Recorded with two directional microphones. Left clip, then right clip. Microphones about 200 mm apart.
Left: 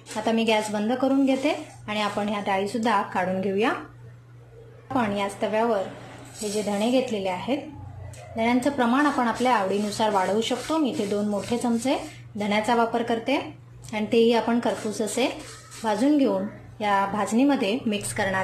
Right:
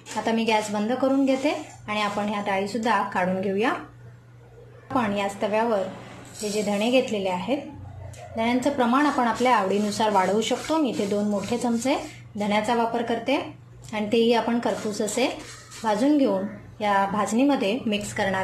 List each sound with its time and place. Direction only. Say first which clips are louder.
0.1 s a woman's voice: even; 5° left (ahead or behind)
4.9 s a woman's voice: right 1 dB; centre (ahead or behind)